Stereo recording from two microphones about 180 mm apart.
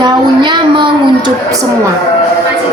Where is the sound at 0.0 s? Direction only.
25° right (ahead or behind).